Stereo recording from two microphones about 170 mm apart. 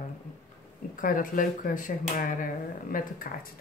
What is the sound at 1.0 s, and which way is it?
A woman's voice, 55° left (ahead or behind).